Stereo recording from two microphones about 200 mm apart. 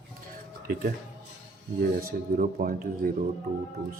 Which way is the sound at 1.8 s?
50° right (ahead or behind).